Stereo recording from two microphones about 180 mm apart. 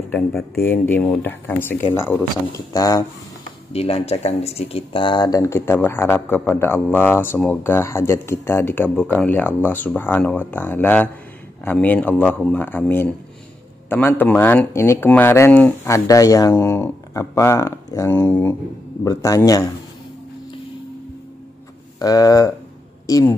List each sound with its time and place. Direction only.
0.1 s speech: 10° left (ahead or behind)
3.7 s speech: 35° left (ahead or behind)
22.0 s speech: 20° left (ahead or behind)